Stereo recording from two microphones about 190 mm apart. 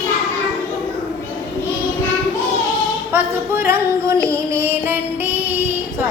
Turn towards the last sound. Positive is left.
turn(degrees=-15)  # may be behind; listen again after turning